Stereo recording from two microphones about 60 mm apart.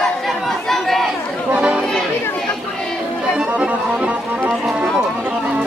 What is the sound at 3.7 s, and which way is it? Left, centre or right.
Music, right.